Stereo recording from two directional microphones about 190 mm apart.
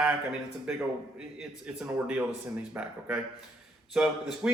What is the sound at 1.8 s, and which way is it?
Speech, 10° right (ahead or behind).